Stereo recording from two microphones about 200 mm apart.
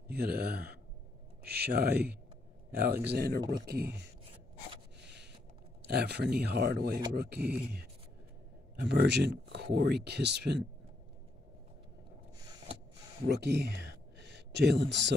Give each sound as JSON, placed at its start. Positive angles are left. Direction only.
{"t": 0.1, "sound": "speech", "side_deg": -50}
{"t": 5.0, "sound": "a sound", "side_deg": -60}
{"t": 5.9, "sound": "speech", "side_deg": -55}
{"t": 8.8, "sound": "speech", "side_deg": -60}
{"t": 13.3, "sound": "speech", "side_deg": -55}